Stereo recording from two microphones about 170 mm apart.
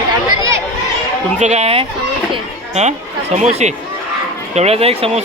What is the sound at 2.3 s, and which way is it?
Children playing, 40° right (ahead or behind).